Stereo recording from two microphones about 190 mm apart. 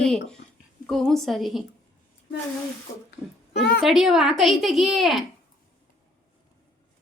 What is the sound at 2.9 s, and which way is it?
Speech, 35° left (ahead or behind).